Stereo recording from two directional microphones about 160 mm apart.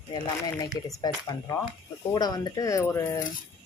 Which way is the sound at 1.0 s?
20° left (ahead or behind).